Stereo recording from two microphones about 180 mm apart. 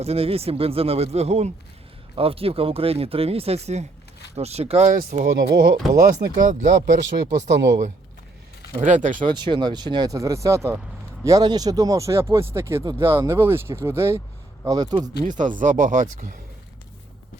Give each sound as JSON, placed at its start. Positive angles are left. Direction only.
{"t": 0.0, "sound": "speech", "side_deg": -35}
{"t": 5.2, "sound": "speech", "side_deg": -65}
{"t": 6.2, "sound": "speech", "side_deg": -45}
{"t": 8.8, "sound": "speech", "side_deg": -45}
{"t": 9.2, "sound": "speech", "side_deg": -25}
{"t": 15.2, "sound": "speech", "side_deg": -45}